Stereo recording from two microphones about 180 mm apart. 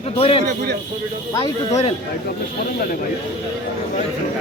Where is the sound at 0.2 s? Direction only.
30° left (ahead or behind).